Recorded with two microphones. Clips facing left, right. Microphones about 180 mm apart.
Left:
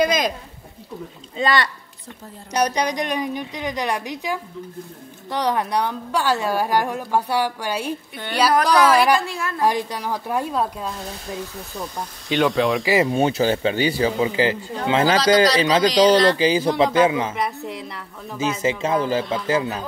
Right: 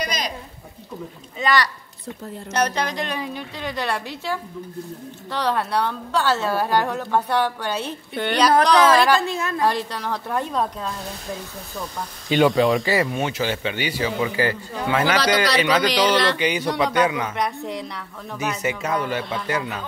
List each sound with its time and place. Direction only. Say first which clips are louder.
0.0 s a sound: left 8 dB; 50° left (ahead or behind)
1.4 s speech: left 1 dB; 25° left (ahead or behind)
2.5 s a woman's voice: left 2 dB; 15° left (ahead or behind)
8.9 s a woman's voice: even; 15° left (ahead or behind)
9.2 s a woman's voice: right 3 dB; 20° right (ahead or behind)
9.6 s a woman's voice: left 3 dB; 15° left (ahead or behind)
12.3 s a woman's voice: right 2 dB; centre (ahead or behind)
12.8 s a woman's voice: left 3 dB; 15° left (ahead or behind)
13.1 s speech: left 5 dB; 35° left (ahead or behind)
14.3 s speech: left 2 dB; 20° left (ahead or behind)
17.4 s a woman's voice: right 1 dB; centre (ahead or behind)
18.4 s speech: left 4 dB; 25° left (ahead or behind)